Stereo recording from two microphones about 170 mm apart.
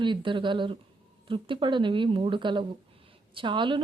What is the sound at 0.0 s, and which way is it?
Speech, 25° right (ahead or behind).